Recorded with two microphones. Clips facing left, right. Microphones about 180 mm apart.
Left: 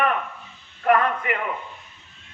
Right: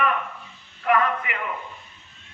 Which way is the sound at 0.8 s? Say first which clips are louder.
Left 2 dB; 45° left (ahead or behind).